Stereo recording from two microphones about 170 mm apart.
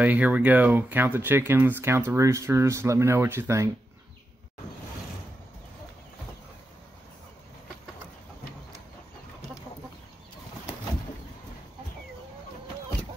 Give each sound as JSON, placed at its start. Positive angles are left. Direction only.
{"t": 0.0, "sound": "speech", "side_deg": -10}